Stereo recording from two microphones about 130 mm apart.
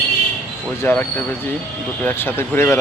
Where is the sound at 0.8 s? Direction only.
15° left (ahead or behind).